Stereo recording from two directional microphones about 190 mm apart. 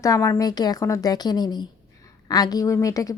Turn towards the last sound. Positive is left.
turn(degrees=15)  # may be behind; listen again after turning